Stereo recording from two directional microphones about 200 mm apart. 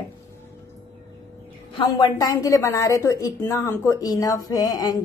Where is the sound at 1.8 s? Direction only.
20° left (ahead or behind).